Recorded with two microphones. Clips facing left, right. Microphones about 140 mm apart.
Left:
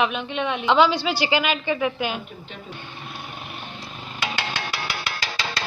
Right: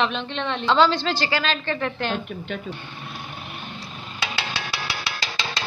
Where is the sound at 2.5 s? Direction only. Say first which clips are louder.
Right 11 dB; 70° right (ahead or behind).